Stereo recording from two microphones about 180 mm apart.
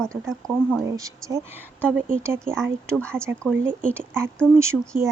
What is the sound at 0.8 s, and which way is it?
Speech, 20° right (ahead or behind).